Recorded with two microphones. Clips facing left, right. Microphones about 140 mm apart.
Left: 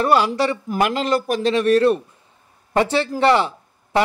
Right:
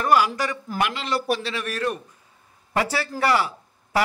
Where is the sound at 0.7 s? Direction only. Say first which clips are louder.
Left 6 dB; 40° left (ahead or behind).